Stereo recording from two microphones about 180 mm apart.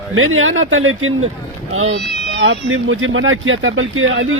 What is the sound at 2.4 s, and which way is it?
Speech, 90° right.